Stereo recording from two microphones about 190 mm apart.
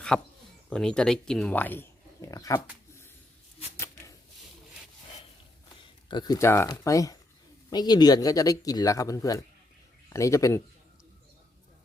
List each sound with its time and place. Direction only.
0.1 s speech: 5° left (ahead or behind)
6.1 s speech: 20° left (ahead or behind)